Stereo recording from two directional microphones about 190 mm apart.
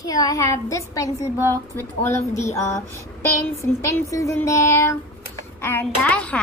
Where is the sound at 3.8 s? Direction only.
15° left (ahead or behind).